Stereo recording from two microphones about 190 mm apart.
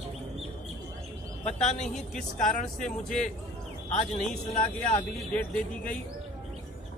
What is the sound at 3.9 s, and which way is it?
Speech, 40° left (ahead or behind).